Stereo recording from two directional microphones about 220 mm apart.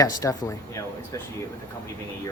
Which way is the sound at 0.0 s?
15° left (ahead or behind).